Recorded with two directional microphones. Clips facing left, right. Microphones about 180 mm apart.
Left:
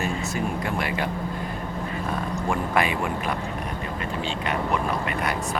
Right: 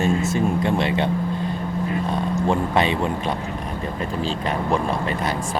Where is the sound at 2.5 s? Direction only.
25° right (ahead or behind).